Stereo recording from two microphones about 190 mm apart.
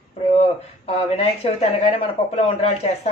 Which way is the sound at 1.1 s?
35° left (ahead or behind).